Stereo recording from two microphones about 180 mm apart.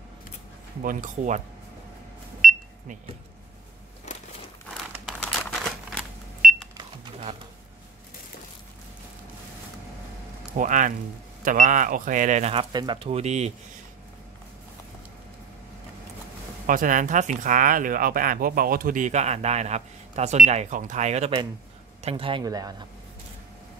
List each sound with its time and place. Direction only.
0.8 s speech: 45° right (ahead or behind)
2.4 s pulse: centre (ahead or behind)
4.6 s a sound: 5° left (ahead or behind)
10.5 s speech: 45° right (ahead or behind)
16.6 s speech: 45° right (ahead or behind); by 22.8 s 20° right (ahead or behind)